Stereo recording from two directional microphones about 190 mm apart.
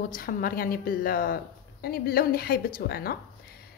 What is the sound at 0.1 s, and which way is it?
A woman's voice, 50° left (ahead or behind).